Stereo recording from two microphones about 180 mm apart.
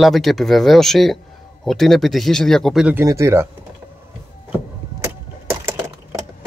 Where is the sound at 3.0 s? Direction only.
15° right (ahead or behind).